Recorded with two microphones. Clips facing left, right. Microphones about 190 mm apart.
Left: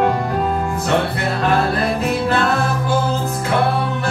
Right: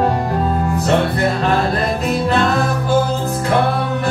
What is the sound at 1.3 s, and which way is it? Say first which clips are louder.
Music: right 1 dB; 5° left (ahead or behind).